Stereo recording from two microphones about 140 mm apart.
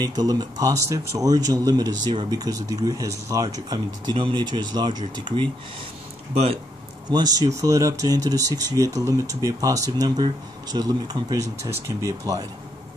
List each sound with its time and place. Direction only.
0.0 s speech: 30° right (ahead or behind)
7.1 s speech: 30° right (ahead or behind)